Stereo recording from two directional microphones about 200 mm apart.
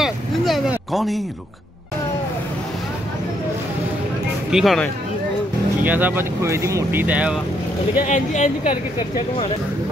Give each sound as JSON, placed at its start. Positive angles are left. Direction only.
{"t": 0.0, "sound": "a sound", "side_deg": 0}
{"t": 4.5, "sound": "speech", "side_deg": 0}
{"t": 5.9, "sound": "speech", "side_deg": -10}
{"t": 8.1, "sound": "speech", "side_deg": 35}